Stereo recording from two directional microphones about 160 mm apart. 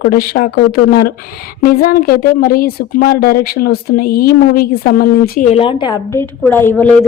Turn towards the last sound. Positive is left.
turn(degrees=10)  # may be behind; listen again after turning